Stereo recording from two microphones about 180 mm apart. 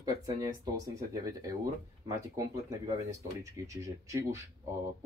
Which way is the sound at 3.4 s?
15° right (ahead or behind).